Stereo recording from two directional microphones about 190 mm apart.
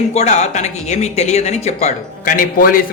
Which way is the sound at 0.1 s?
35° left (ahead or behind).